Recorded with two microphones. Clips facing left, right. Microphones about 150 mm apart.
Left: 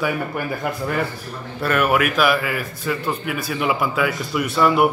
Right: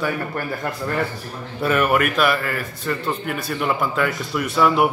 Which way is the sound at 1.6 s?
Centre (ahead or behind).